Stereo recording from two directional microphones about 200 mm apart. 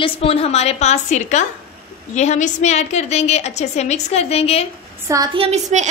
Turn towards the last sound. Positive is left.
turn(degrees=-35)  # may be behind; listen again after turning